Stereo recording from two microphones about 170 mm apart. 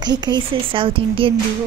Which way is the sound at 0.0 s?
25° right (ahead or behind).